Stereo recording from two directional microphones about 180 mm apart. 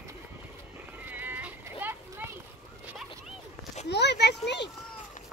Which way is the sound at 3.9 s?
70° left (ahead or behind).